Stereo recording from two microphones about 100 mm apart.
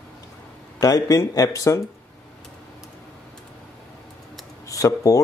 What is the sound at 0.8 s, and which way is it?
Speech, 35° left (ahead or behind).